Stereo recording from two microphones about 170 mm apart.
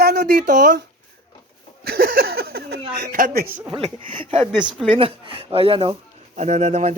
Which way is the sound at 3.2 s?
55° right (ahead or behind).